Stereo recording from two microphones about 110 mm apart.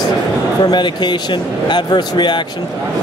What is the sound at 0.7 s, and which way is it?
Speech, 40° left (ahead or behind).